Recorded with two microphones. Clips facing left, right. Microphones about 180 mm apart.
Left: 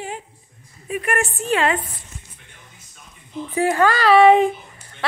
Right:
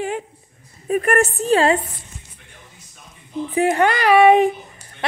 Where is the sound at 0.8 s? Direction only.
45° right (ahead or behind).